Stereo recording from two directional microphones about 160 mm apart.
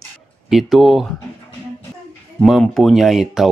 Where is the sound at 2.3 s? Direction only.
Centre (ahead or behind).